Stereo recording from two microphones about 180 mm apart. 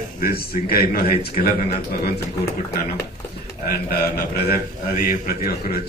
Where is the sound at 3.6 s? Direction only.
60° left (ahead or behind).